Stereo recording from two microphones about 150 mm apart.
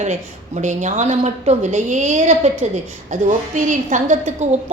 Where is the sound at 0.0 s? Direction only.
50° right (ahead or behind).